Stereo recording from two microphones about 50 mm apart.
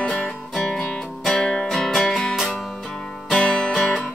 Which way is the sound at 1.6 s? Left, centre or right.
Centre.